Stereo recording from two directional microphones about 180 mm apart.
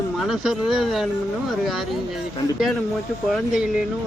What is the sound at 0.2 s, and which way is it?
Speech, centre (ahead or behind).